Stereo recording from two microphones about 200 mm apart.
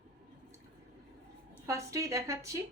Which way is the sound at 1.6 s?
15° right (ahead or behind).